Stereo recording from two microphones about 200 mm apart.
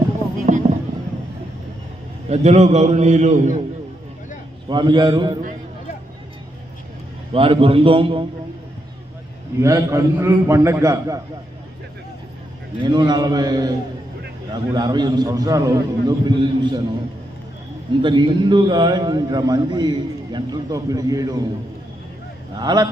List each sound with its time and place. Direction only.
0.4 s a sound: 35° right (ahead or behind)
2.3 s a man's voice: 35° right (ahead or behind)
4.7 s a man's voice: 20° right (ahead or behind)
7.3 s a man's voice: 25° right (ahead or behind)
9.6 s a man's voice: 15° right (ahead or behind)
12.8 s a man's voice: 20° right (ahead or behind)
18.0 s a man's voice: 25° right (ahead or behind)
22.5 s a man's voice: 20° right (ahead or behind)